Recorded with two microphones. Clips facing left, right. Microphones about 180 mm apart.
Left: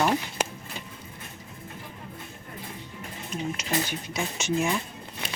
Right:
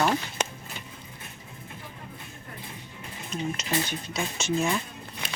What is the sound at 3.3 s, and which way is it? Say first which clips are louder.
Speech: even; 10° left (ahead or behind).